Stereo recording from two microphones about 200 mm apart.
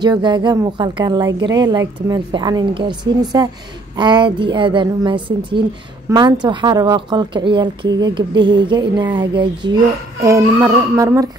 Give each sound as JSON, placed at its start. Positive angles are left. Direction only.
{"t": 0.0, "sound": "a woman's voice", "side_deg": -20}